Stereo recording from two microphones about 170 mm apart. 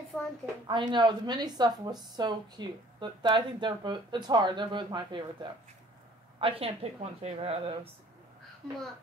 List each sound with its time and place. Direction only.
0.1 s a woman's voice: 5° left (ahead or behind)
0.7 s a woman's voice: 25° right (ahead or behind)